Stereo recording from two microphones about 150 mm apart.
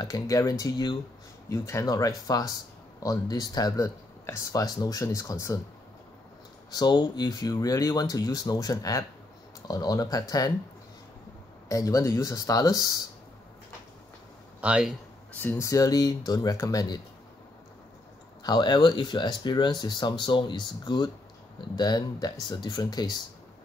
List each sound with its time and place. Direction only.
0.0 s speech: 20° left (ahead or behind)
6.7 s speech: 30° left (ahead or behind)
11.7 s speech: 20° left (ahead or behind)
14.6 s speech: 10° right (ahead or behind)
15.3 s speech: 15° left (ahead or behind)
18.4 s speech: 30° left (ahead or behind)